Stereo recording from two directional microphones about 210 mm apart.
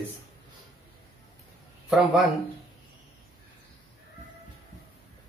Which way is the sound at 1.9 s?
Centre (ahead or behind).